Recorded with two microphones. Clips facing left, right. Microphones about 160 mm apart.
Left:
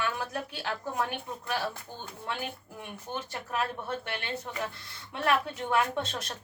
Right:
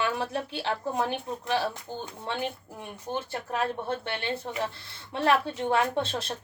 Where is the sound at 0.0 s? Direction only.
30° right (ahead or behind).